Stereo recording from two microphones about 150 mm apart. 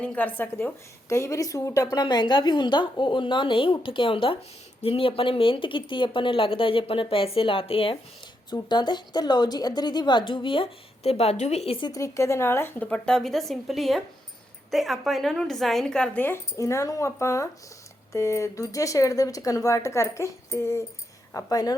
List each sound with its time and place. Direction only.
0.0 s a woman's voice: 10° left (ahead or behind); by 11.9 s 40° left (ahead or behind)
11.9 s a woman's voice: 20° left (ahead or behind)